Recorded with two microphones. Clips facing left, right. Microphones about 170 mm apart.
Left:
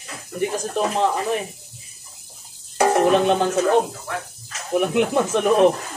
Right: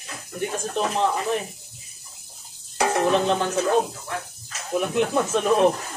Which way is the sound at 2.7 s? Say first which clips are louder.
Left 5 dB; 55° left (ahead or behind).